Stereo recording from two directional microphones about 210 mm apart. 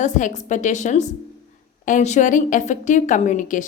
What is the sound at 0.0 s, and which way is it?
A woman's voice, 35° left (ahead or behind).